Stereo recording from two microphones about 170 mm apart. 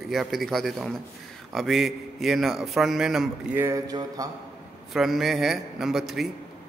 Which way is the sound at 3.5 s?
15° right (ahead or behind).